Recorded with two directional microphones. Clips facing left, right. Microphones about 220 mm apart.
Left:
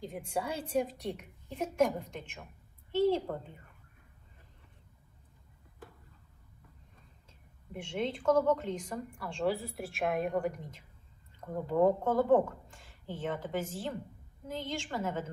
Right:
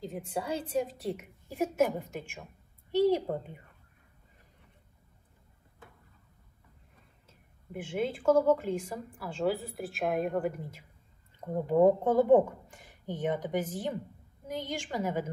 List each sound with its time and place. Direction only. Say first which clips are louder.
0.1 s a woman's voice: right 2 dB; centre (ahead or behind); by 3.5 s 15° right (ahead or behind)
7.2 s a woman's voice: right 2 dB; 5° right (ahead or behind)
11.4 s a woman's voice: right 4 dB; 20° right (ahead or behind)